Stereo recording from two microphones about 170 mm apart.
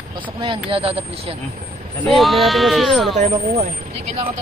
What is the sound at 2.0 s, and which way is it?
Speech, centre (ahead or behind).